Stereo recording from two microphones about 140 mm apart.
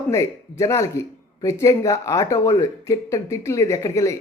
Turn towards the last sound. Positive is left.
turn(degrees=20)  # may be behind; listen again after turning